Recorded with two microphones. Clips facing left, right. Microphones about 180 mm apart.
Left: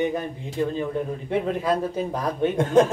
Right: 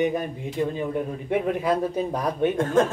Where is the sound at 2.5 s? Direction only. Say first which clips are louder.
Left 5 dB; 15° left (ahead or behind).